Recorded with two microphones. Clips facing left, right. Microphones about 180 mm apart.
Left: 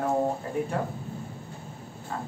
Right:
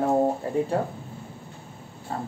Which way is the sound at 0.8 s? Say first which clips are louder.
Right 3 dB; 30° right (ahead or behind).